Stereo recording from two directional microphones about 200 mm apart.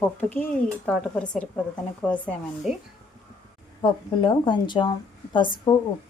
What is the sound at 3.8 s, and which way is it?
Speech, 25° left (ahead or behind).